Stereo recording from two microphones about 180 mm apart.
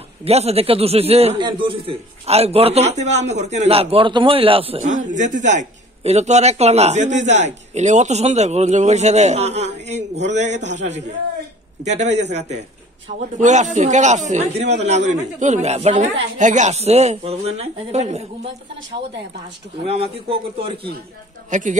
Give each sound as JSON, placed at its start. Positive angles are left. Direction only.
{"t": 0.2, "sound": "speech", "side_deg": -35}
{"t": 4.9, "sound": "speech", "side_deg": -45}
{"t": 19.8, "sound": "speech", "side_deg": -30}
{"t": 21.5, "sound": "speech", "side_deg": -45}